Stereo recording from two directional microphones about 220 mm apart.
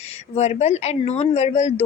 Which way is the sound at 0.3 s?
30° left (ahead or behind).